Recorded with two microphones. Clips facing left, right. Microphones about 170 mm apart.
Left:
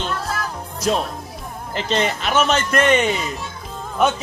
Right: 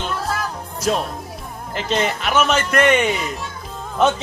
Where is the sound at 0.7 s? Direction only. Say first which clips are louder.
Even; 10° right (ahead or behind).